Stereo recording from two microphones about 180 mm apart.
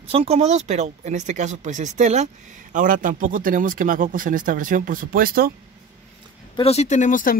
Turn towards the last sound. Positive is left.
turn(degrees=45)  # may be behind; listen again after turning